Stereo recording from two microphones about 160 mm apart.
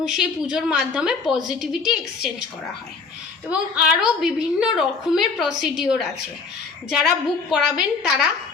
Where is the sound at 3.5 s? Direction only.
5° right (ahead or behind).